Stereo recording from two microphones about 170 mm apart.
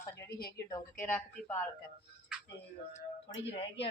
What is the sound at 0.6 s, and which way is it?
Speech, 15° left (ahead or behind).